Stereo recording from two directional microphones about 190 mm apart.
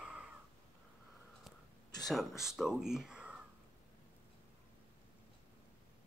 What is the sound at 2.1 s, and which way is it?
Speech, centre (ahead or behind).